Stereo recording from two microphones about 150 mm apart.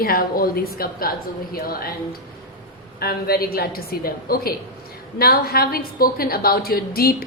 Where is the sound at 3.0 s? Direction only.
85° left.